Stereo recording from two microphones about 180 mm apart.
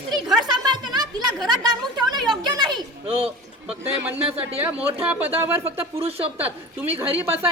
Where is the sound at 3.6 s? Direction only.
10° right (ahead or behind).